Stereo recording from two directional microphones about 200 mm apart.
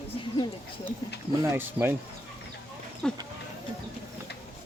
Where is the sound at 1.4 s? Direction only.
10° right (ahead or behind).